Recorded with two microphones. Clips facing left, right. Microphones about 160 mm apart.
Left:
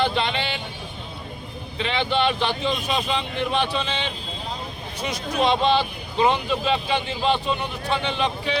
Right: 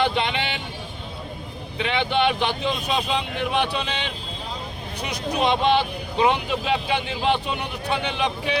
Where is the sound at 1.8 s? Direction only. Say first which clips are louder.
Right 1 dB; 15° right (ahead or behind).